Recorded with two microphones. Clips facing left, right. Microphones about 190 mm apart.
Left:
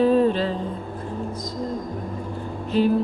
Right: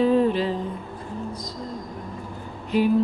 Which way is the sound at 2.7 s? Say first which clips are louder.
Left 1 dB; 15° right (ahead or behind).